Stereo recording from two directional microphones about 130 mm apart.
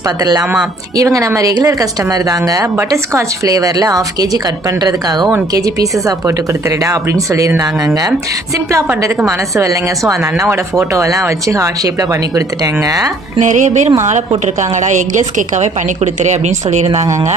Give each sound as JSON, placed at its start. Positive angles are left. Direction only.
{"t": 0.2, "sound": "speech", "side_deg": -30}
{"t": 13.4, "sound": "music", "side_deg": -70}
{"t": 14.1, "sound": "a woman's voice", "side_deg": -65}